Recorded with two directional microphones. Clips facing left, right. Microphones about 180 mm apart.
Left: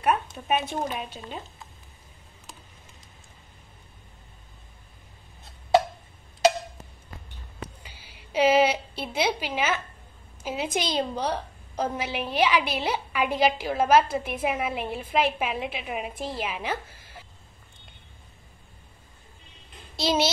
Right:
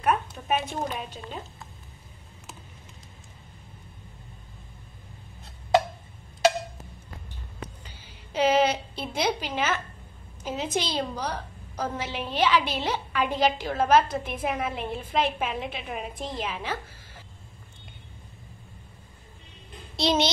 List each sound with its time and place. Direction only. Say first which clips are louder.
0.0 s a sound: even; 10° left (ahead or behind)
0.8 s a woman's voice: left 1 dB; 10° left (ahead or behind)
7.6 s a sound: left 1 dB; 10° left (ahead or behind)
10.4 s a woman's voice: left 1 dB; 10° left (ahead or behind); by 11.9 s 30° left (ahead or behind)
11.9 s a woman's voice: left 2 dB; 10° left (ahead or behind)
20.0 s a child's voice: even; 5° left (ahead or behind)